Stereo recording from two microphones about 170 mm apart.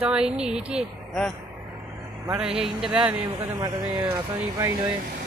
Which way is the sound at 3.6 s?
25° right (ahead or behind).